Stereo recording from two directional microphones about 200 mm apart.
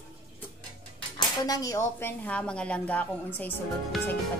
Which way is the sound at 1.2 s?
20° left (ahead or behind).